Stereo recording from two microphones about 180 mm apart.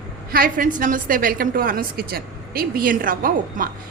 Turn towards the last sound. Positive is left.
turn(degrees=-50)  # may be behind; listen again after turning